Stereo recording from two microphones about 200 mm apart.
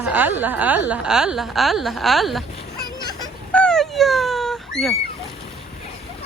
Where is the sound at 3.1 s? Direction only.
20° left (ahead or behind).